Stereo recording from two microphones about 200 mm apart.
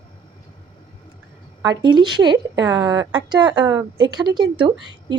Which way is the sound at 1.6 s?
20° right (ahead or behind).